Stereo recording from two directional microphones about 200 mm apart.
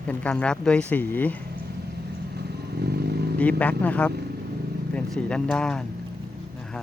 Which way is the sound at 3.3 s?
5° left (ahead or behind).